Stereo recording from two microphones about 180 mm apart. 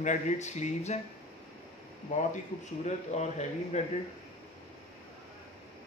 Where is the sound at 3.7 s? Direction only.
40° left (ahead or behind).